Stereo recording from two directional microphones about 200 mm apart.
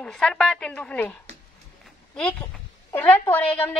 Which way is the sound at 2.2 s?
10° left (ahead or behind).